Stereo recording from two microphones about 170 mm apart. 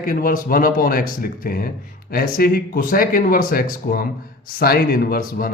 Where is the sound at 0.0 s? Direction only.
55° left (ahead or behind).